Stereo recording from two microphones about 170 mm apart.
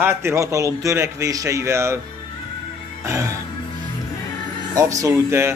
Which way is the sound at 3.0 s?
15° right (ahead or behind).